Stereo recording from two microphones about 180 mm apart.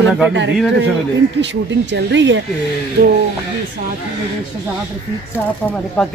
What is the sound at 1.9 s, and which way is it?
Speech, 85° right.